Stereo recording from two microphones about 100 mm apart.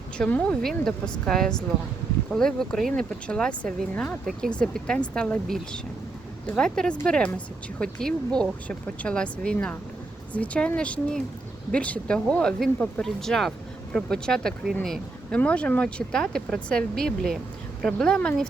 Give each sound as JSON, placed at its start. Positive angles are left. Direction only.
{"t": 0.2, "sound": "speech", "side_deg": 10}